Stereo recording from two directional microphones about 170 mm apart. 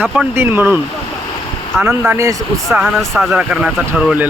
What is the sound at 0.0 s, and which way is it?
Speech, 10° right (ahead or behind).